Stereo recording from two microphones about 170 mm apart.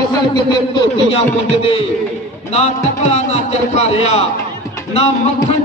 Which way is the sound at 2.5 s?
40° left (ahead or behind).